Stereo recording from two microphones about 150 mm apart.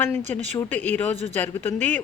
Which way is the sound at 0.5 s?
10° left (ahead or behind).